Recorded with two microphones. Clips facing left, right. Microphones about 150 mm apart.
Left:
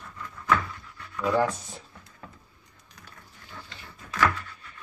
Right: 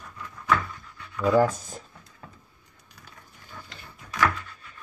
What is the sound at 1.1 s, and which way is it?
Dog, 10° right (ahead or behind).